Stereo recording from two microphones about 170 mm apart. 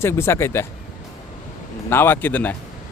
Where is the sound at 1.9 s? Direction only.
10° left (ahead or behind).